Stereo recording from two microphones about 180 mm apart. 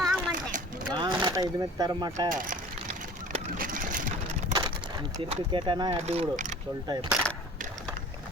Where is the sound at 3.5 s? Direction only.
50° right (ahead or behind).